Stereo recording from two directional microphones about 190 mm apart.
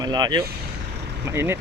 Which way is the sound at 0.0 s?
20° right (ahead or behind).